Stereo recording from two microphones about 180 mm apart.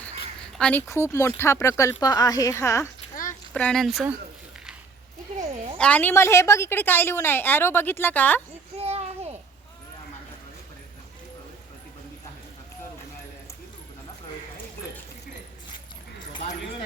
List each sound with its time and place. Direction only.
0.6 s a woman's voice: 10° left (ahead or behind)
3.5 s speech: 5° left (ahead or behind)
5.7 s a woman's voice: 5° left (ahead or behind)
8.8 s a sound: 35° right (ahead or behind)